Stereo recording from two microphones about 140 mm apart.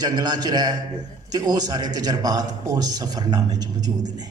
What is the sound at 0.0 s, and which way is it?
Speech, 30° right (ahead or behind).